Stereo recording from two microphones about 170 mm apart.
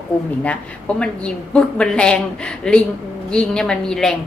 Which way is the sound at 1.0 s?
5° left (ahead or behind).